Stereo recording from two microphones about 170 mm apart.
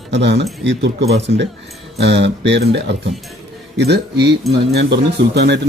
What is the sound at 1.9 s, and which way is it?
Speech, 85° right.